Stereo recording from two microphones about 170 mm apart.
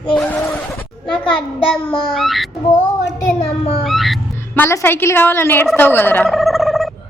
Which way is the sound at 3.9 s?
Centre (ahead or behind).